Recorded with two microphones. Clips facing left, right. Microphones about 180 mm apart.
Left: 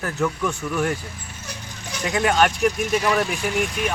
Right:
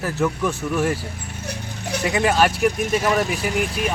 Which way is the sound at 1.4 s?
60° right (ahead or behind).